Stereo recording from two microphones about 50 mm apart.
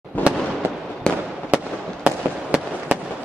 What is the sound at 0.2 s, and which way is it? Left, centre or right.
Fireworks, left.